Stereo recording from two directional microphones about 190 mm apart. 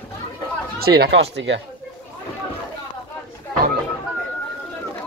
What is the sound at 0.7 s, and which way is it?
Speech, 55° right (ahead or behind).